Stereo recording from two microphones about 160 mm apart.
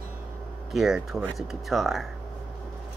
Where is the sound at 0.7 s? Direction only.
Centre (ahead or behind).